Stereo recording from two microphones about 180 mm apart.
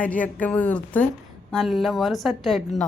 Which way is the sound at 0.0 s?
10° left (ahead or behind).